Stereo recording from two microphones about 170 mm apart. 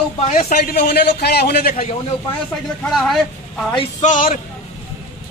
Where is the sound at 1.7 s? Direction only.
35° left (ahead or behind).